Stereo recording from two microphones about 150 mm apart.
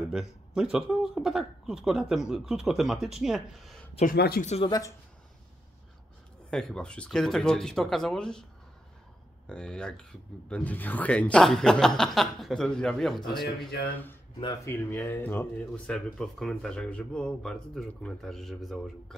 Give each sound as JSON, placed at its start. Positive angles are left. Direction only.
{"t": 0.1, "sound": "speech", "side_deg": -5}
{"t": 4.0, "sound": "speech", "side_deg": 85}
{"t": 4.6, "sound": "speech", "side_deg": 25}
{"t": 6.5, "sound": "speech", "side_deg": 5}
{"t": 9.5, "sound": "speech", "side_deg": 5}
{"t": 13.7, "sound": "speech", "side_deg": 70}
{"t": 14.4, "sound": "speech", "side_deg": 25}
{"t": 14.7, "sound": "speech", "side_deg": 15}